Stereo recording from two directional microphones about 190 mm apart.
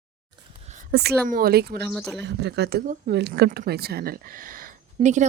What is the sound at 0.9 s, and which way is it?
Speech, 55° right (ahead or behind).